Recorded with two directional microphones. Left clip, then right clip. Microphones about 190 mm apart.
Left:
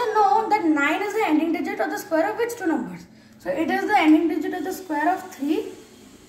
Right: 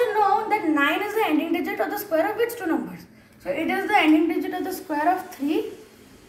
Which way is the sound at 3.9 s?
5° right (ahead or behind).